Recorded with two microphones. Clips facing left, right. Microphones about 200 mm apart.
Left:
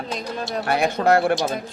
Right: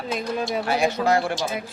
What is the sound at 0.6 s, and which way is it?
Speech, 60° left (ahead or behind).